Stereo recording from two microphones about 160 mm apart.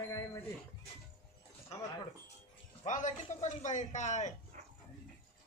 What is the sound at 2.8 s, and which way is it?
A man's voice, 50° left (ahead or behind).